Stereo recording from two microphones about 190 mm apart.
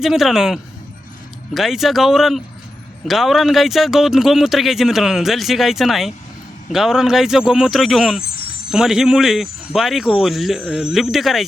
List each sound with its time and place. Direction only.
0.0 s speech: centre (ahead or behind)